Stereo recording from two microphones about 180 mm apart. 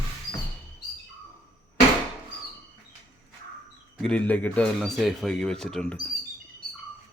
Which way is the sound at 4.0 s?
5° left (ahead or behind).